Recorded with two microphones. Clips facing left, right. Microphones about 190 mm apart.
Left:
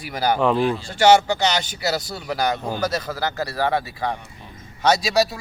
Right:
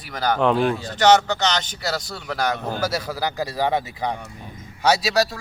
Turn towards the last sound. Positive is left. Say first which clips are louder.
# left 1 dB
turn(degrees=0)  # may be behind; listen again after turning